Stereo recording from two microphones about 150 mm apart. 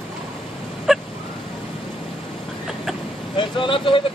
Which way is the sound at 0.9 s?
Centre (ahead or behind).